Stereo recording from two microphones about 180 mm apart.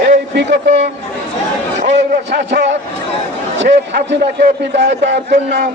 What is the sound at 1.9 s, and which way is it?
A man's voice, 75° right (ahead or behind).